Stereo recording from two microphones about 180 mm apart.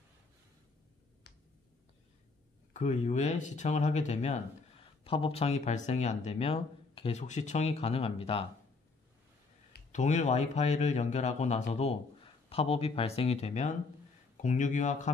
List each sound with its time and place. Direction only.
2.7 s speech: 40° left (ahead or behind)
9.9 s speech: 40° left (ahead or behind)